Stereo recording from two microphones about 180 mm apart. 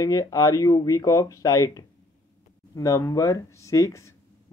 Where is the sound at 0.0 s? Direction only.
20° left (ahead or behind).